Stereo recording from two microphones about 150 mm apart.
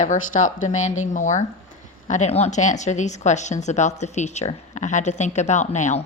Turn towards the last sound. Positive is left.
turn(degrees=50)  # may be behind; listen again after turning